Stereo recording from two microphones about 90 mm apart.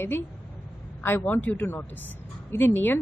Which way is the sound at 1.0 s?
20° left (ahead or behind).